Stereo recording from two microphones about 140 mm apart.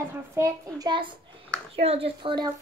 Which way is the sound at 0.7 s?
35° right (ahead or behind).